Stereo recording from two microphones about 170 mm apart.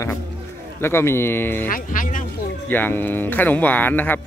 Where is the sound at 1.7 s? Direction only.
50° left (ahead or behind).